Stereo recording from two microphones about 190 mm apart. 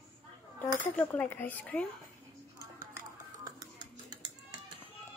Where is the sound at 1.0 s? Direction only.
10° left (ahead or behind).